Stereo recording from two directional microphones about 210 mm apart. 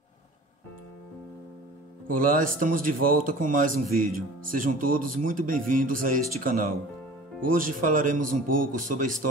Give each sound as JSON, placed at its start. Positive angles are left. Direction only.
{"t": 2.0, "sound": "a man's voice", "side_deg": -40}